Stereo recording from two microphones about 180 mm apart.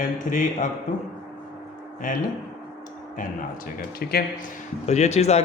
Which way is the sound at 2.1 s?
45° left (ahead or behind).